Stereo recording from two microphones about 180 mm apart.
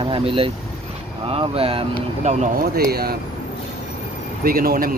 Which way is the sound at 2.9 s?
60° right (ahead or behind).